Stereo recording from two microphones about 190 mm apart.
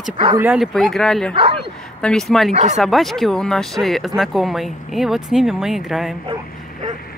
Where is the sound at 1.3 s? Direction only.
30° right (ahead or behind).